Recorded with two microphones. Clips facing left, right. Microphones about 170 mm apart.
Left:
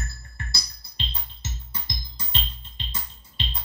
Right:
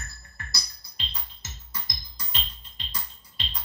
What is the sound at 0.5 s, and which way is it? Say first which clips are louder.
Music: left 4 dB; 30° left (ahead or behind).